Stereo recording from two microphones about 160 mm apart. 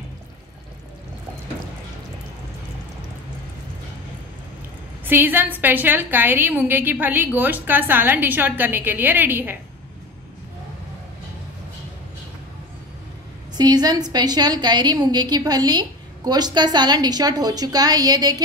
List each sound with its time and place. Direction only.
5.0 s a woman's voice: 10° right (ahead or behind)
13.6 s a woman's voice: 25° right (ahead or behind)